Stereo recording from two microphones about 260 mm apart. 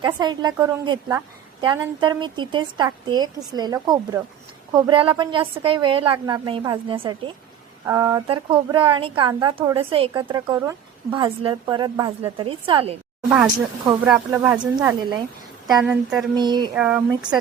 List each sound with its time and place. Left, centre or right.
0.0 s a woman's voice: centre
13.3 s speech: centre
16.3 s speech: centre
16.7 s speech: centre